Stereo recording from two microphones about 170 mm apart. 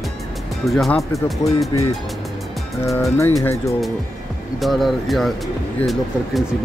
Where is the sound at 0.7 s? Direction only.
Centre (ahead or behind).